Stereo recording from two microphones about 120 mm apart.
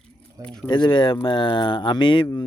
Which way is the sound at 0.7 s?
40° left (ahead or behind).